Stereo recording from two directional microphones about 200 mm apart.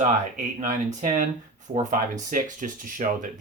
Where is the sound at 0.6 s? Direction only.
40° right (ahead or behind).